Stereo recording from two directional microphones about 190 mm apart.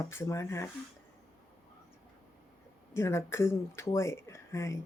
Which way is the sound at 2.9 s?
15° left (ahead or behind).